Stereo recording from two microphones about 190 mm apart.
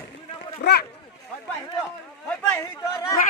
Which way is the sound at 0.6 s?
60° left (ahead or behind).